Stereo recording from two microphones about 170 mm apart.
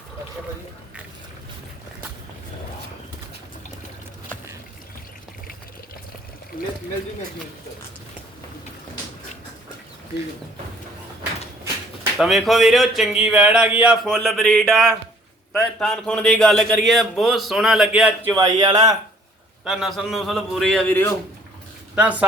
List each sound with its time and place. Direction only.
12.1 s a man's voice: centre (ahead or behind)
18.3 s speech: 20° right (ahead or behind)
19.6 s a man's voice: 5° right (ahead or behind)
21.9 s a woman's voice: 10° right (ahead or behind)